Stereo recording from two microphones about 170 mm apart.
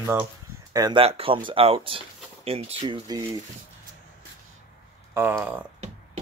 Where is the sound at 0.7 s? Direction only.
25° right (ahead or behind).